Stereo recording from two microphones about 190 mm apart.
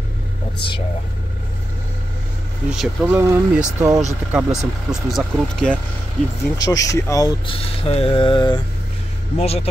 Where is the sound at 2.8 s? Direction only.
Centre (ahead or behind).